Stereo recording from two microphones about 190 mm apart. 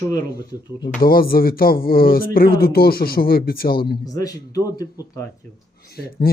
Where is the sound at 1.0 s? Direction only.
50° left (ahead or behind).